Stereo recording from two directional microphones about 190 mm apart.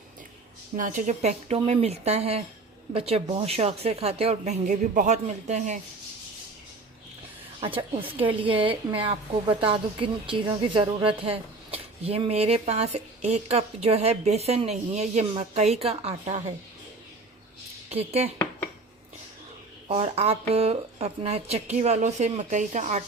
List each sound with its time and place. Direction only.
0.8 s a woman's voice: 45° right (ahead or behind)
7.8 s a woman's voice: 25° right (ahead or behind)
17.8 s speech: 35° right (ahead or behind)
19.9 s a woman's voice: 30° right (ahead or behind)